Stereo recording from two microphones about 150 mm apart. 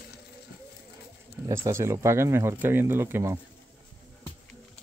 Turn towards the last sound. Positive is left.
turn(degrees=-15)  # may be behind; listen again after turning